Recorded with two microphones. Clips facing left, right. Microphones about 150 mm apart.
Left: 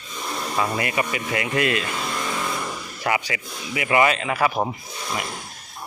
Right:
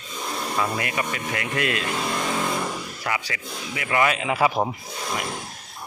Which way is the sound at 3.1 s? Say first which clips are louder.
Left 5 dB; 15° left (ahead or behind).